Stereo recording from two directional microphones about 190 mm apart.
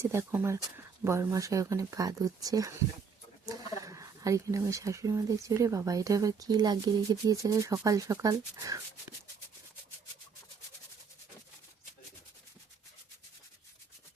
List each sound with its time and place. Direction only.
0.0 s speech: 15° right (ahead or behind)